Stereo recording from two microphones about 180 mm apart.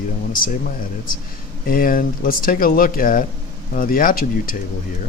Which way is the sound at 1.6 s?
55° left (ahead or behind).